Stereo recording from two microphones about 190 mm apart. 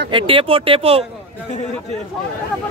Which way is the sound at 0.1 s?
25° right (ahead or behind).